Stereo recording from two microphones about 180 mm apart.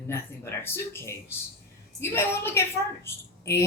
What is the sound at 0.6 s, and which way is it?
A woman's voice, 15° left (ahead or behind).